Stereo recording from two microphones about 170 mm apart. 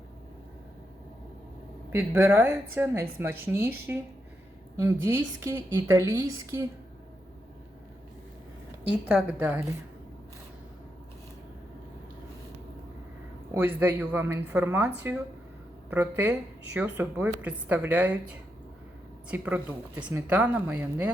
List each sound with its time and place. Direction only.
1.9 s a woman's voice: 15° right (ahead or behind)
9.0 s a woman's voice: 10° right (ahead or behind)
13.5 s a woman's voice: 10° right (ahead or behind)